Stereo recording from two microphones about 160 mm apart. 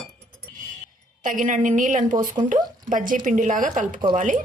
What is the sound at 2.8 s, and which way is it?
A woman's voice, 55° right (ahead or behind).